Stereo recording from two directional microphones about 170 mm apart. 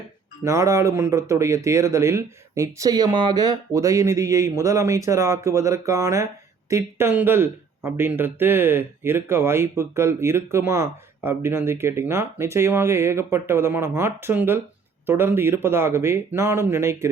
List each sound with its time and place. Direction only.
0.4 s speech: 20° right (ahead or behind)